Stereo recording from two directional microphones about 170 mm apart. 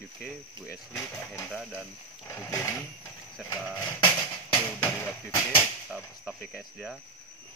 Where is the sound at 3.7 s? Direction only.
25° left (ahead or behind).